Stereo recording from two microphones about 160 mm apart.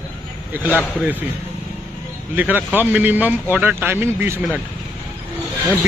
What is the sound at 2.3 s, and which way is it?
Speech, 10° right (ahead or behind).